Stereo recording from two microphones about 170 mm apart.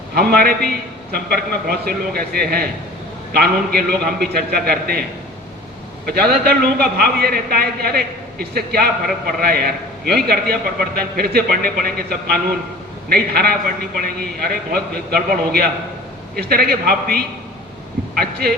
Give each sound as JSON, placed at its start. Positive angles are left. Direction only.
{"t": 0.3, "sound": "a man's voice", "side_deg": -60}
{"t": 6.1, "sound": "a man's voice", "side_deg": -65}